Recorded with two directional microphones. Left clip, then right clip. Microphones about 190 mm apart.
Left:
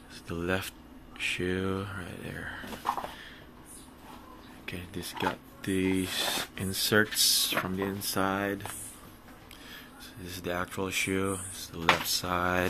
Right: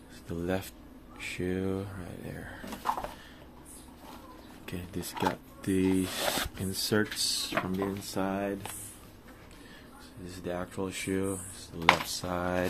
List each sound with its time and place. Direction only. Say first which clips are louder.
0.3 s speech: left 2 dB; 10° right (ahead or behind)
4.6 s speech: left 1 dB; 25° right (ahead or behind); by 8.5 s 5° left (ahead or behind)
10.2 s speech: left 3 dB; 5° right (ahead or behind)